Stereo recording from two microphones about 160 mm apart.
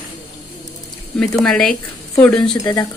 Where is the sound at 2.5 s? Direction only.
20° left (ahead or behind).